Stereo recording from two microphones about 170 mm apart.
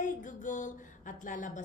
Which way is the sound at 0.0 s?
50° left (ahead or behind).